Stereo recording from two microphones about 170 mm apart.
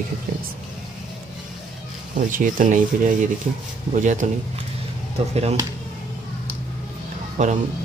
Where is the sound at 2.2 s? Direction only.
50° right (ahead or behind).